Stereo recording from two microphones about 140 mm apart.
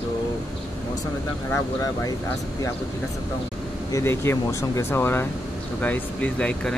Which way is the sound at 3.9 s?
20° left (ahead or behind).